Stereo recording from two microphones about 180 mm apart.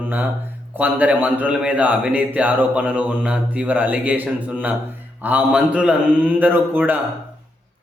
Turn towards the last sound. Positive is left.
turn(degrees=-10)  # may be behind; listen again after turning